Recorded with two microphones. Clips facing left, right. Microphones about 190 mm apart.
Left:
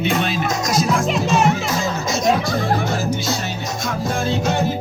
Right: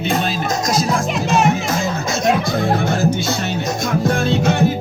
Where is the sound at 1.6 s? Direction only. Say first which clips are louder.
Right 1 dB; 55° right (ahead or behind).